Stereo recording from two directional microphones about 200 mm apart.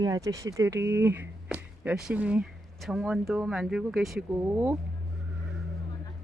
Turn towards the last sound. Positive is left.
turn(degrees=-10)  # may be behind; listen again after turning